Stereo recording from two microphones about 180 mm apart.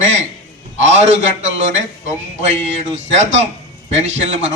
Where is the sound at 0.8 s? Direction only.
40° right (ahead or behind).